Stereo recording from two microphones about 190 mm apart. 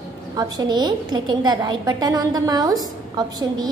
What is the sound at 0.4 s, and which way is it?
A woman's voice, 20° right (ahead or behind).